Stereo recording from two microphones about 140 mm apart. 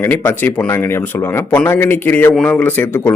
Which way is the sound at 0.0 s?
15° left (ahead or behind).